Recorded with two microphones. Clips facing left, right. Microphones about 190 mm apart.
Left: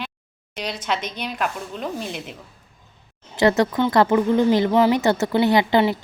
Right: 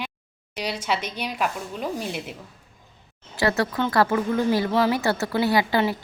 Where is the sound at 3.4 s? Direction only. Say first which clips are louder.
Left 5 dB; 20° left (ahead or behind).